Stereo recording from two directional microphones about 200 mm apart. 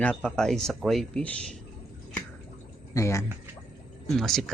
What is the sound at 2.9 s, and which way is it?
Speech, 15° left (ahead or behind).